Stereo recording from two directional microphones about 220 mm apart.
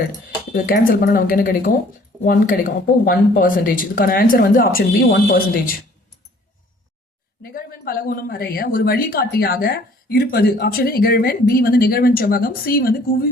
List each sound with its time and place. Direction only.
0.5 s speech: 40° left (ahead or behind)
7.4 s speech: 40° left (ahead or behind)